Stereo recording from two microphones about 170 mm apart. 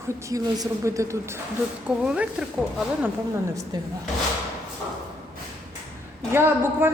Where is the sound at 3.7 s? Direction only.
25° right (ahead or behind).